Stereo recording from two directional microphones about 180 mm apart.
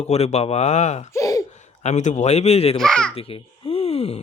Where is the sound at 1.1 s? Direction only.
20° left (ahead or behind).